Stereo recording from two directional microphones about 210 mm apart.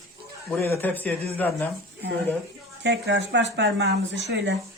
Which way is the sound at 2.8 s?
55° right (ahead or behind).